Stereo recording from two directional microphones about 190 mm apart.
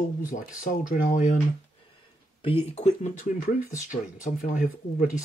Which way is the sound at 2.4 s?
30° left (ahead or behind).